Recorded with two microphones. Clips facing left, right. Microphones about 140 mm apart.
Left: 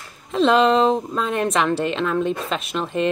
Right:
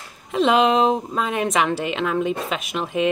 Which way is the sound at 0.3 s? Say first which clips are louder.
Left 1 dB; 10° right (ahead or behind).